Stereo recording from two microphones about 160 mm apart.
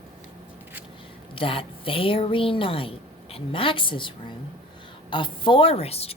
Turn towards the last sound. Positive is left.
turn(degrees=40)  # may be behind; listen again after turning